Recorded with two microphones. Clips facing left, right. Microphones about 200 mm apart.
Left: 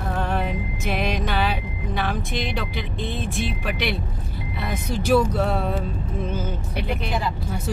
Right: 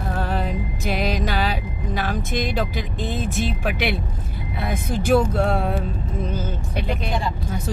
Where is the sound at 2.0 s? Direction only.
45° right (ahead or behind).